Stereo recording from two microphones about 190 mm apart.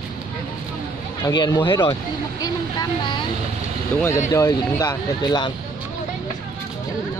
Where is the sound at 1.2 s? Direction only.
20° left (ahead or behind).